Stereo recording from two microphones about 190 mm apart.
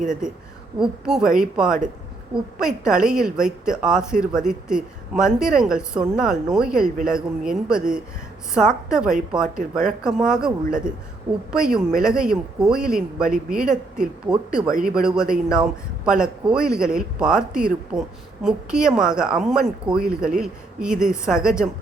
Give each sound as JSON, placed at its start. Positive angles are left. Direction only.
{"t": 0.8, "sound": "a woman's voice", "side_deg": -5}